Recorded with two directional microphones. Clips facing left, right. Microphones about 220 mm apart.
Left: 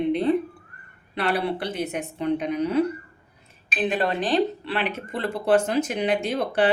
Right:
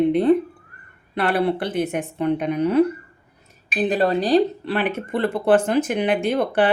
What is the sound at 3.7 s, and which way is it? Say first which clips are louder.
A woman's voice: right 5 dB; 40° right (ahead or behind).